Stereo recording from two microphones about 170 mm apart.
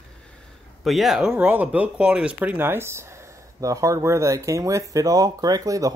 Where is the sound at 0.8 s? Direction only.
Centre (ahead or behind).